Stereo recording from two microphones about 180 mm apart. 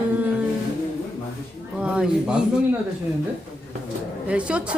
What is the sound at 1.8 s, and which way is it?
Speech, 5° right (ahead or behind).